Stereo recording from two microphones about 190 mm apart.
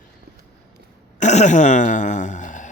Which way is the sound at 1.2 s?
40° left (ahead or behind).